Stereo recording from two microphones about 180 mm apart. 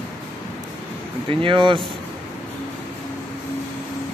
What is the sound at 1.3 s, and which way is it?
Speech, 30° right (ahead or behind).